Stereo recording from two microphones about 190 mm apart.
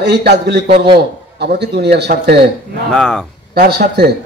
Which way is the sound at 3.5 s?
55° right (ahead or behind).